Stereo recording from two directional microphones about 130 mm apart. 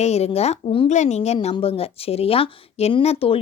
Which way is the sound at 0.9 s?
60° left (ahead or behind).